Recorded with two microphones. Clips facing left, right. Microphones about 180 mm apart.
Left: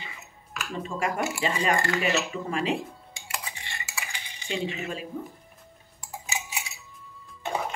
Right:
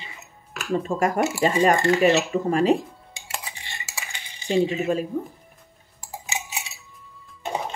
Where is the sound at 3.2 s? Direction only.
25° right (ahead or behind).